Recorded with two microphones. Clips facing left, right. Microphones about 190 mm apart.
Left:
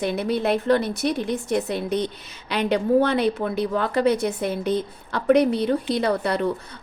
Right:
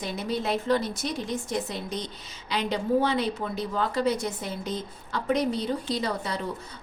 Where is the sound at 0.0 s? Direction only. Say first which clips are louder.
Left 7 dB; 60° left (ahead or behind).